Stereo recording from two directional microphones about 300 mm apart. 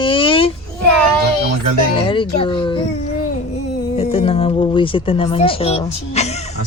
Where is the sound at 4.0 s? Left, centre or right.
Centre.